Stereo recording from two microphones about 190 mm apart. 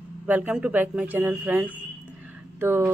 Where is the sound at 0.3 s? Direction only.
5° right (ahead or behind).